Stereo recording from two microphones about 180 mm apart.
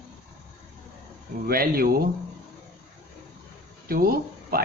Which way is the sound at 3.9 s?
55° right (ahead or behind).